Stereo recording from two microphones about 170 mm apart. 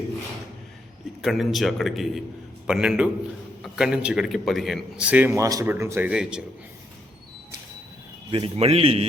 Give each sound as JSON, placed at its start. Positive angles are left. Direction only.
{"t": 1.2, "sound": "a man's voice", "side_deg": 0}
{"t": 8.3, "sound": "a man's voice", "side_deg": -35}